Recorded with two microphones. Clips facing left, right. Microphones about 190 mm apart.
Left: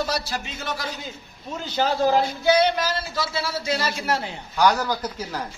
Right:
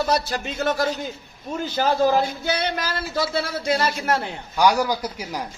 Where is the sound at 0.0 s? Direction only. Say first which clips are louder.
Right 4 dB; 55° right (ahead or behind).